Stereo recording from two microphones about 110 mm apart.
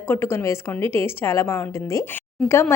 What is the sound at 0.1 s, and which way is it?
A woman's voice, 20° left (ahead or behind).